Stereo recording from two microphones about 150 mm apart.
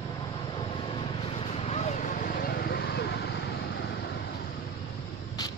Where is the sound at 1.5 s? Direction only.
45° left (ahead or behind); by 3.2 s 90° left.